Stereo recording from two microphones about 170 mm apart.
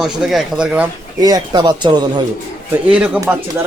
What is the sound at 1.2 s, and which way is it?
Speech, 25° right (ahead or behind).